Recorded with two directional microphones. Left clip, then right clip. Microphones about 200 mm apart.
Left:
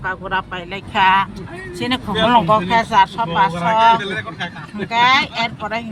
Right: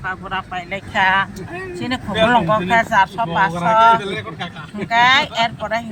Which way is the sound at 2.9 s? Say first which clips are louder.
Left 1 dB; 10° left (ahead or behind).